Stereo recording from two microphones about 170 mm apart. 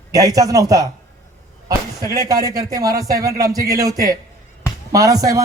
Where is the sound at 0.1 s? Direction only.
20° right (ahead or behind).